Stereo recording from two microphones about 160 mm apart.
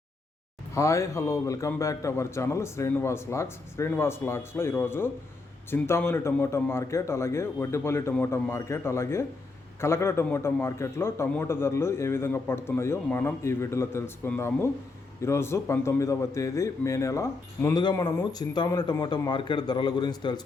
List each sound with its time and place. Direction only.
0.7 s a man's voice: 20° left (ahead or behind)